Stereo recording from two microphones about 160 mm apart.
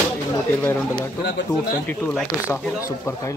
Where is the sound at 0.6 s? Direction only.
15° left (ahead or behind).